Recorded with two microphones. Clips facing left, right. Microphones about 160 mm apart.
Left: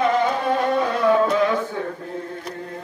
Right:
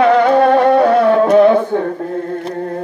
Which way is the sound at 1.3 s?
60° right (ahead or behind).